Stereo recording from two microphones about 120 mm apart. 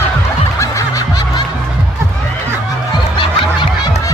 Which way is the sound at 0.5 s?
25° left (ahead or behind).